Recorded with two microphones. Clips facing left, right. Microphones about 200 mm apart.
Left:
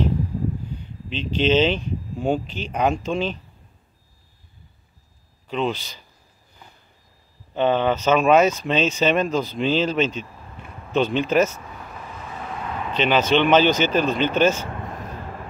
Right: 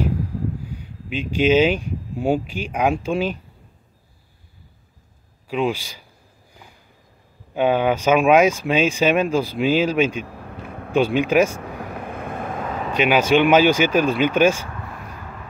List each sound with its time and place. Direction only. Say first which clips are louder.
0.7 s speech: right 1 dB; 10° right (ahead or behind)
5.5 s speech: right 2 dB; 10° right (ahead or behind)
6.5 s vehicle: right 2 dB; 10° right (ahead or behind)
7.5 s speech: right 1 dB; 10° right (ahead or behind)
10.2 s vehicle: right 6 dB; 65° right (ahead or behind)
10.9 s speech: right 2 dB; 10° right (ahead or behind)
11.6 s vehicle: right 7 dB; 65° right (ahead or behind)
12.9 s speech: right 2 dB; 10° right (ahead or behind)